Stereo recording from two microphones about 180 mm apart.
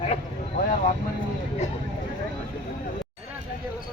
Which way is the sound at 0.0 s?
40° left (ahead or behind).